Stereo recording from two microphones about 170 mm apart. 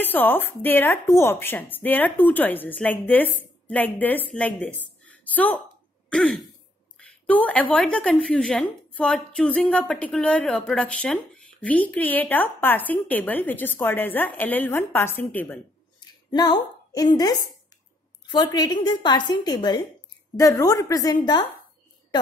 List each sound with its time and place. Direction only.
0.0 s a woman's voice: 10° left (ahead or behind)
6.0 s throat clearing: 5° left (ahead or behind)
7.0 s a woman's voice: 10° left (ahead or behind)
16.0 s a sound: 25° left (ahead or behind)
18.2 s a woman's voice: 25° left (ahead or behind)